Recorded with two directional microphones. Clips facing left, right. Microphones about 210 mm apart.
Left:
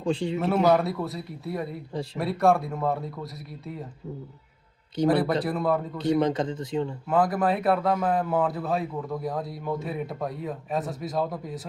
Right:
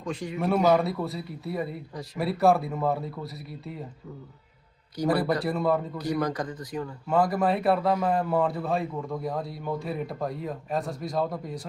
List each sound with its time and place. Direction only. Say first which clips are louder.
0.0 s a man's voice: left 6 dB; 30° left (ahead or behind)
0.3 s a man's voice: right 1 dB; centre (ahead or behind)
5.0 s a man's voice: left 3 dB; 25° left (ahead or behind)
5.4 s a man's voice: even; centre (ahead or behind)
6.0 s a man's voice: left 5 dB; 25° left (ahead or behind)
7.1 s a man's voice: even; centre (ahead or behind)